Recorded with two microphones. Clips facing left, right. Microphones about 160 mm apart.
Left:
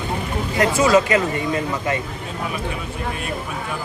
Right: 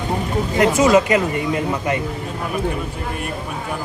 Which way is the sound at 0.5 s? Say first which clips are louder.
Right 2 dB; 20° right (ahead or behind).